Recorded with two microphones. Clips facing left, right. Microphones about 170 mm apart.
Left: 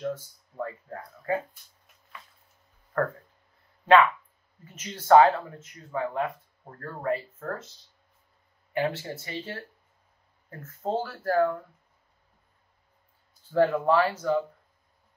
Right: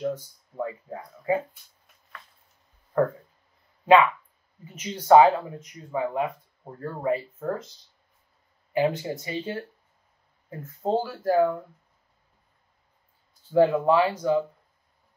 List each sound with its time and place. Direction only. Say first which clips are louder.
0.0 s a sound: right 3 dB; 10° right (ahead or behind)
3.8 s speech: right 2 dB; 10° right (ahead or behind)
8.7 s speech: right 4 dB; 15° right (ahead or behind)
13.5 s speech: right 3 dB; 10° right (ahead or behind)